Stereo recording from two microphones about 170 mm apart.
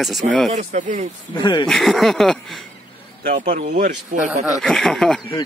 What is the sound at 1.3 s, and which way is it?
Speech, 25° left (ahead or behind).